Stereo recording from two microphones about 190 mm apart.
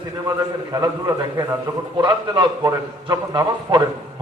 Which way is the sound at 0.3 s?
20° right (ahead or behind).